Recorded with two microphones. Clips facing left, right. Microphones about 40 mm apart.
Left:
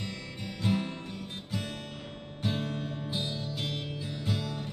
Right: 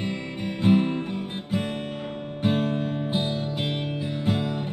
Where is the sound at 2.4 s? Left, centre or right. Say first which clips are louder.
Right 9 dB; right.